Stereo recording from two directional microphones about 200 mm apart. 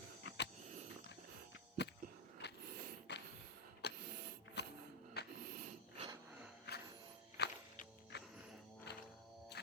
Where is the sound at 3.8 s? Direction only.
55° left (ahead or behind).